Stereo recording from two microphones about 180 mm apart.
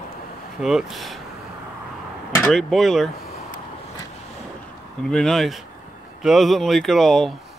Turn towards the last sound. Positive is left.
turn(degrees=0)  # may be behind; listen again after turning